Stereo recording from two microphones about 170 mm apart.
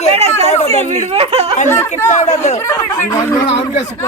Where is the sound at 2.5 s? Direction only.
20° left (ahead or behind).